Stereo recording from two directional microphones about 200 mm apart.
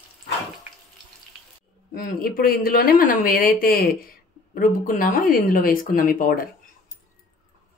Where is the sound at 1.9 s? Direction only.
45° left (ahead or behind).